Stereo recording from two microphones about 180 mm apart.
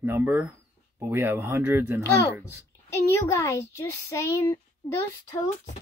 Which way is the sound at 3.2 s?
15° left (ahead or behind).